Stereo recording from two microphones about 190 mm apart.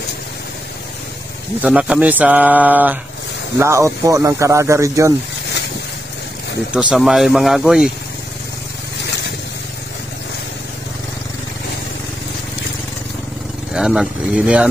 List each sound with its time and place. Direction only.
1.6 s speech: 5° right (ahead or behind)
6.7 s speech: 5° right (ahead or behind)
13.7 s speech: 5° right (ahead or behind)